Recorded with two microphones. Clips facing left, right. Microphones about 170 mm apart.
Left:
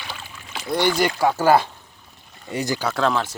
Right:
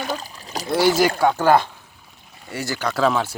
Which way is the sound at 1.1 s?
5° left (ahead or behind).